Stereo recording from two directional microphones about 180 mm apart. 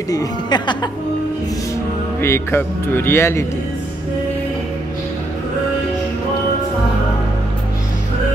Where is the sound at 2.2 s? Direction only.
15° left (ahead or behind).